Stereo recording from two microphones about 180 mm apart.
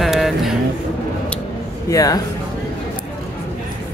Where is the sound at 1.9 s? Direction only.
20° left (ahead or behind).